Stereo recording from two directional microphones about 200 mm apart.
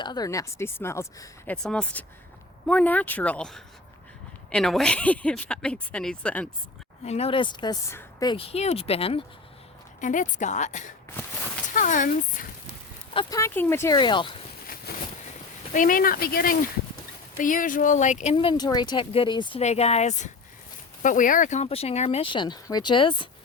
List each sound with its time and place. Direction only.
0.0 s speech: 20° left (ahead or behind); by 6.5 s 5° left (ahead or behind)
7.0 s speech: 30° left (ahead or behind)
10.0 s speech: 40° left (ahead or behind)
13.1 s speech: 15° left (ahead or behind)
14.9 s boat: 50° left (ahead or behind)
15.7 s speech: 40° left (ahead or behind); by 23.3 s 25° left (ahead or behind)